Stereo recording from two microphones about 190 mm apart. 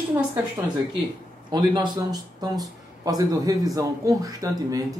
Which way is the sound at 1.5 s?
20° right (ahead or behind).